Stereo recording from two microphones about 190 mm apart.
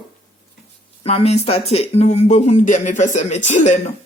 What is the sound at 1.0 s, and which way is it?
Speech, 35° left (ahead or behind).